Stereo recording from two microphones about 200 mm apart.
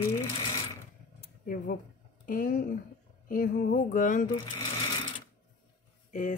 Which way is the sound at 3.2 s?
45° left (ahead or behind).